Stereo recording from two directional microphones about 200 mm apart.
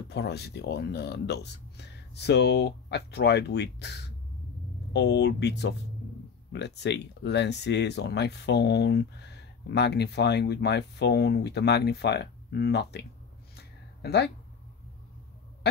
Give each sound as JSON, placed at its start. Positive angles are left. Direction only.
{"t": 0.1, "sound": "speech", "side_deg": 55}
{"t": 14.0, "sound": "speech", "side_deg": 55}